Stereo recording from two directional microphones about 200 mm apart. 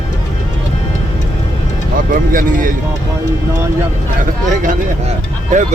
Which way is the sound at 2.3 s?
45° right (ahead or behind).